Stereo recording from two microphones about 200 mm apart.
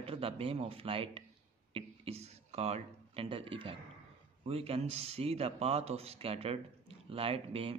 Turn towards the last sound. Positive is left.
turn(degrees=-30)  # may be behind; listen again after turning